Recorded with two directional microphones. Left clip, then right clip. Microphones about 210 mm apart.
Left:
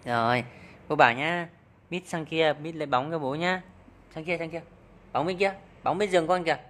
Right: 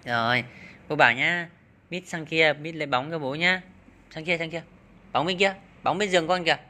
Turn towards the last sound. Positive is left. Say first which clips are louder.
# right 2 dB
turn(degrees=0)  # may be behind; listen again after turning